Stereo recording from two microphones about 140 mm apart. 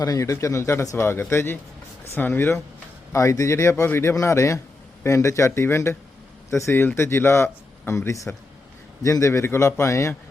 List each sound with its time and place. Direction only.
0.0 s speech: 25° left (ahead or behind)